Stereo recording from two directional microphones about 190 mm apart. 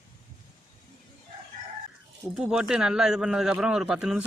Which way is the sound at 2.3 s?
5° right (ahead or behind).